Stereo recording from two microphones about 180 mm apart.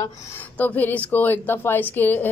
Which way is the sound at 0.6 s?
10° left (ahead or behind).